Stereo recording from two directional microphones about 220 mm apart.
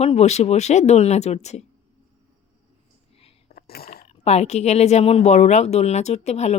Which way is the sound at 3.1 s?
25° left (ahead or behind).